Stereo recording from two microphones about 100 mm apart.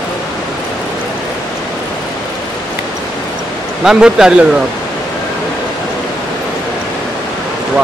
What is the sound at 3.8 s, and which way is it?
Speech, 5° right (ahead or behind).